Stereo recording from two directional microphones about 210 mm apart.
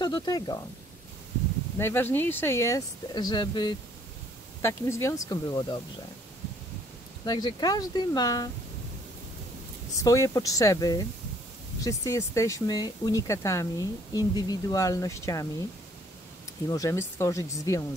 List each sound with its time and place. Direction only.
0.0 s speech: 20° left (ahead or behind)
1.8 s speech: 10° left (ahead or behind)
7.2 s speech: 20° left (ahead or behind)
9.9 s speech: 15° left (ahead or behind)
16.6 s speech: 15° left (ahead or behind)